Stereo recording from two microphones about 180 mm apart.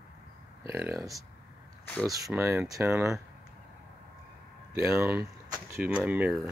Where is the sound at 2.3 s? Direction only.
10° right (ahead or behind).